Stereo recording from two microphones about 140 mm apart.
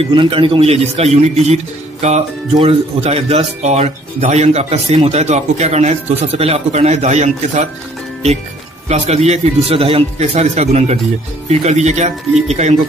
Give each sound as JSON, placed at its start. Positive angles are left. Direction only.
{"t": 0.0, "sound": "speech", "side_deg": -40}
{"t": 8.8, "sound": "speech", "side_deg": -50}